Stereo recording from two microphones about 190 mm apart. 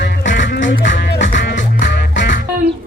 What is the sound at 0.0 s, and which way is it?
Music, 70° left (ahead or behind).